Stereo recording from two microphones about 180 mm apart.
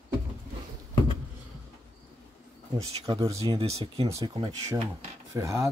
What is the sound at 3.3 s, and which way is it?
Speech, 30° right (ahead or behind).